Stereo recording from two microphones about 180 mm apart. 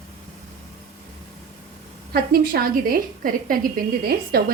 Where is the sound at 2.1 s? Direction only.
55° right (ahead or behind).